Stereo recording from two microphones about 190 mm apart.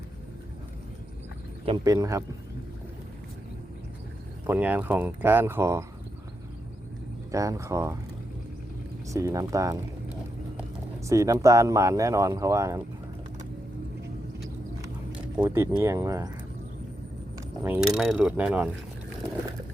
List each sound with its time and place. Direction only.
1.6 s speech: 20° right (ahead or behind)
4.4 s speech: 10° right (ahead or behind)
7.3 s speech: 15° right (ahead or behind)
9.0 s speech: 15° right (ahead or behind)
11.1 s speech: 15° right (ahead or behind)
15.4 s speech: 15° right (ahead or behind)
17.6 s mechanisms: 5° right (ahead or behind)